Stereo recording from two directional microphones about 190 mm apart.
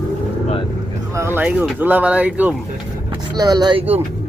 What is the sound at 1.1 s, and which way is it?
Speech, 15° right (ahead or behind).